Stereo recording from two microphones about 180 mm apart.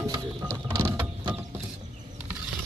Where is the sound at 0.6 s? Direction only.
20° right (ahead or behind).